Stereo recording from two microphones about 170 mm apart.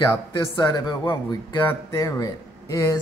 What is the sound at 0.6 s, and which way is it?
Speech, 25° left (ahead or behind).